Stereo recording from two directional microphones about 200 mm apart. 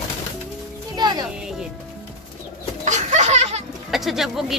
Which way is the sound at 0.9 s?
20° right (ahead or behind).